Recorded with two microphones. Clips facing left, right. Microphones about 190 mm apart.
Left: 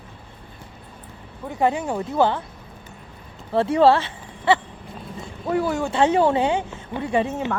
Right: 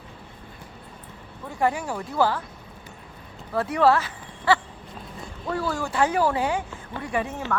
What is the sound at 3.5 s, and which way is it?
Speech, 25° left (ahead or behind).